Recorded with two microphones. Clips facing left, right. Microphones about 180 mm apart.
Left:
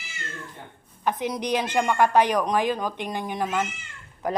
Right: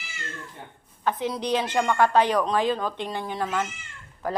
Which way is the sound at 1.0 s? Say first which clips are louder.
Even; 15° left (ahead or behind).